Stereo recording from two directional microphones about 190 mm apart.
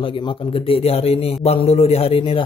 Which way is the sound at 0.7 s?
30° left (ahead or behind).